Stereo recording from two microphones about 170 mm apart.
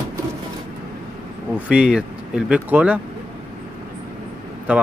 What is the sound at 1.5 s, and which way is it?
Speech, 5° right (ahead or behind).